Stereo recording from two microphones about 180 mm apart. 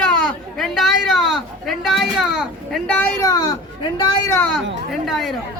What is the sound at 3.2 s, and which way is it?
Speech, 20° left (ahead or behind).